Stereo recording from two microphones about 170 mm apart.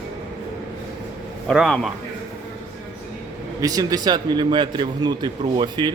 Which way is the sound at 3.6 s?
20° right (ahead or behind).